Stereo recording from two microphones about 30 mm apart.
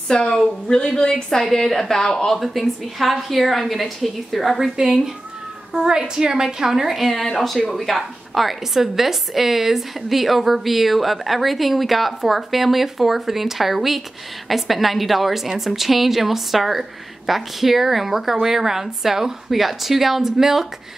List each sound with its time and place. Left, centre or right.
0.3 s speech: left
1.3 s a woman's voice: centre
2.4 s a woman's voice: centre
4.7 s a woman's voice: right
6.4 s a woman's voice: centre
7.3 s a woman's voice: centre